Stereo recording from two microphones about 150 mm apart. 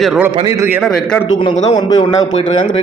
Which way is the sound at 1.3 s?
30° left (ahead or behind).